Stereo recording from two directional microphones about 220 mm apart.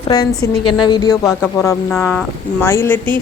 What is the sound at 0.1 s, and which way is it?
A woman's voice, 15° left (ahead or behind).